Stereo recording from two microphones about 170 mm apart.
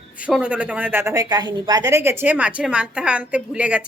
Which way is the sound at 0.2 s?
5° right (ahead or behind).